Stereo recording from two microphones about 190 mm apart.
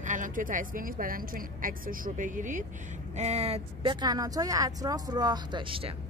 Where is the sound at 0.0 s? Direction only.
40° right (ahead or behind).